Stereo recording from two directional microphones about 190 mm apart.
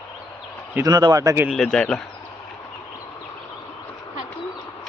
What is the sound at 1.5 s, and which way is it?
Speech, centre (ahead or behind).